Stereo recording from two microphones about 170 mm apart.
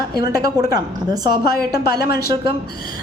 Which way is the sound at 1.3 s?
65° left (ahead or behind).